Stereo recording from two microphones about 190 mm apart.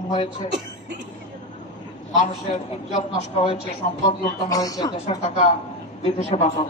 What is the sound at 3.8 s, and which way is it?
Speech, 45° left (ahead or behind).